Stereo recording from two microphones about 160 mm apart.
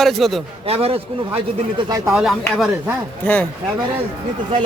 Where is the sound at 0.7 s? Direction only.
40° right (ahead or behind).